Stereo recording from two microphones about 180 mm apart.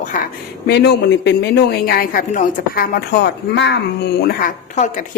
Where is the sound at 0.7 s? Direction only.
65° left (ahead or behind).